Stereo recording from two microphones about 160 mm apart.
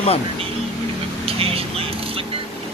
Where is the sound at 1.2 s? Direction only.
35° right (ahead or behind).